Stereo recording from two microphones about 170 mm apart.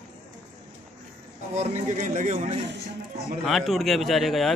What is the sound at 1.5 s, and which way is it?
Speech, 45° right (ahead or behind).